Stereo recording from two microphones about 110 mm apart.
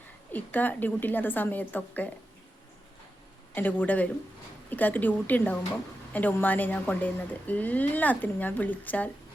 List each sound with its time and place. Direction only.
0.3 s speech: 15° left (ahead or behind)
3.5 s speech: 15° left (ahead or behind)